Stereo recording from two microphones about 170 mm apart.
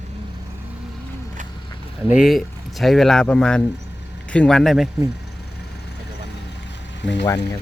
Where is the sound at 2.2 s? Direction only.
Centre (ahead or behind).